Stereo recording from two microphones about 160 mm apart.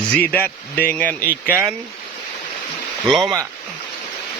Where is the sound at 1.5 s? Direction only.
10° right (ahead or behind).